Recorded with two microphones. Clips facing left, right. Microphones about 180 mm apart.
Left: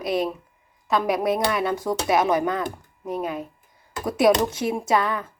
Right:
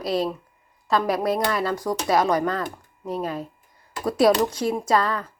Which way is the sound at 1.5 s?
20° left (ahead or behind).